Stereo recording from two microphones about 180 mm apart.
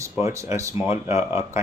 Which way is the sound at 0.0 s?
15° right (ahead or behind).